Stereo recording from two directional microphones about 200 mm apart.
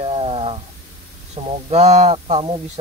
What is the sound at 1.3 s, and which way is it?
Speech, 35° right (ahead or behind).